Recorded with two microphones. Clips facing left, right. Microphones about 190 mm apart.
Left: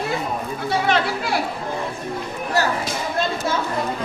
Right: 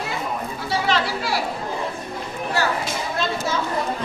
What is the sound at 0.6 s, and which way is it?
Speech, 55° left (ahead or behind).